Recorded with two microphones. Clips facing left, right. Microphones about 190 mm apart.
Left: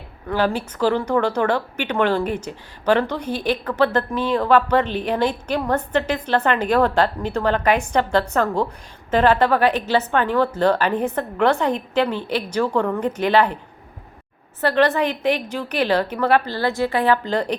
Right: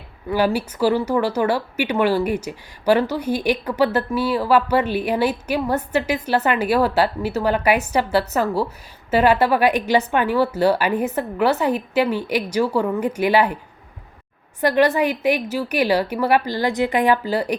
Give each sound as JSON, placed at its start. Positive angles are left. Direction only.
{"t": 0.3, "sound": "speech", "side_deg": -10}
{"t": 14.6, "sound": "speech", "side_deg": -10}